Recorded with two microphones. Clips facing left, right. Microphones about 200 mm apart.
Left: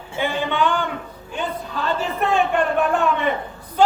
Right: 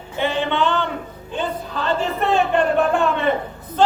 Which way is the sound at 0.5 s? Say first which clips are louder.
Right 1 dB; 10° left (ahead or behind).